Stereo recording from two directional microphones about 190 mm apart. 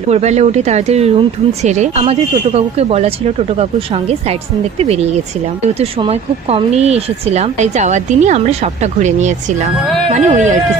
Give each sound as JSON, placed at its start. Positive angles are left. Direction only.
{"t": 0.1, "sound": "speech", "side_deg": -35}
{"t": 4.7, "sound": "speech", "side_deg": -35}
{"t": 10.1, "sound": "speech", "side_deg": -40}